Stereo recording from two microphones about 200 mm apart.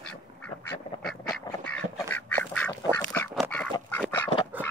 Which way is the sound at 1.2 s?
20° left (ahead or behind).